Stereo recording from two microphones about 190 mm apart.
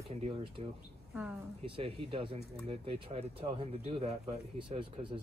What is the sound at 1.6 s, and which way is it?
Speech, 30° right (ahead or behind).